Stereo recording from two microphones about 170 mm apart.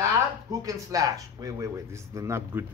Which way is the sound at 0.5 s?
20° right (ahead or behind).